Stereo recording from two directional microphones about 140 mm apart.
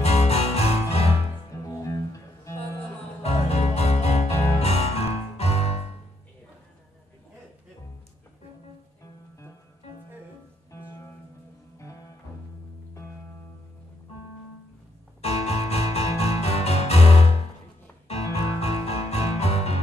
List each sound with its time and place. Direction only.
0.0 s music: 50° left (ahead or behind)
1.7 s music: 20° left (ahead or behind)
3.2 s music: 50° left (ahead or behind)
10.7 s music: 15° left (ahead or behind)
15.2 s music: 50° left (ahead or behind)